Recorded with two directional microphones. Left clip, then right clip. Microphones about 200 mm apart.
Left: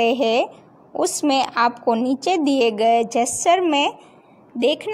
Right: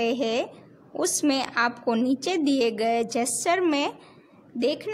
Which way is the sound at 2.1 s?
40° right (ahead or behind).